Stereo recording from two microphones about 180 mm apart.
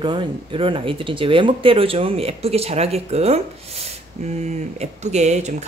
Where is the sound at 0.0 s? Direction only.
25° right (ahead or behind).